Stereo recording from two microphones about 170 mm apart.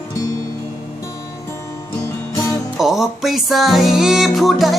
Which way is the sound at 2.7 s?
Centre (ahead or behind).